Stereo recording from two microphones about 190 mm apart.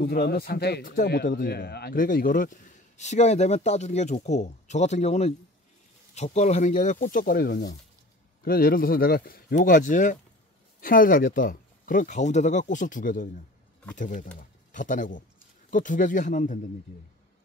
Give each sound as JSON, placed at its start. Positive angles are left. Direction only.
{"t": 0.0, "sound": "speech", "side_deg": 55}